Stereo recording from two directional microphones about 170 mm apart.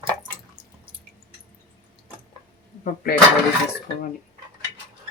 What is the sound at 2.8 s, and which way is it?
Speech, 55° left (ahead or behind).